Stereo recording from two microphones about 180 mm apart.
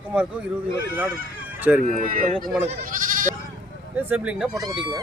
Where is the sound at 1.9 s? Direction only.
50° right (ahead or behind).